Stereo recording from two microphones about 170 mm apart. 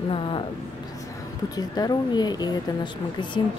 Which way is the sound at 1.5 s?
25° left (ahead or behind).